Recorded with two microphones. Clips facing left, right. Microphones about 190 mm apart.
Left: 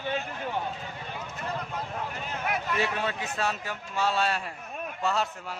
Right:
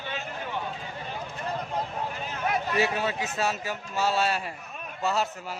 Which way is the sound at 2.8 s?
5° right (ahead or behind).